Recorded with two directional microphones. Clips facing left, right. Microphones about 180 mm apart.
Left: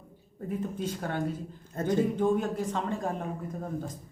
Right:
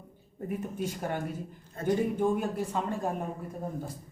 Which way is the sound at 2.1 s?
5° right (ahead or behind).